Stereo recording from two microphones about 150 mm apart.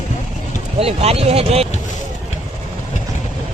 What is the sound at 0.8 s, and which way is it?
Speech, 40° right (ahead or behind).